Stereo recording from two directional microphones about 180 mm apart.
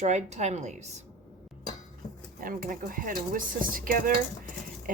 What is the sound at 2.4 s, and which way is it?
A woman's voice, 50° right (ahead or behind).